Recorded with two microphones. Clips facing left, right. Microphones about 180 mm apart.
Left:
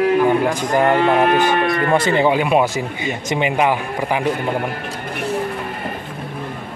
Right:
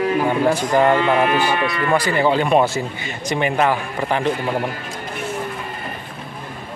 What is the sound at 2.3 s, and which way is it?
A man's voice, 10° left (ahead or behind).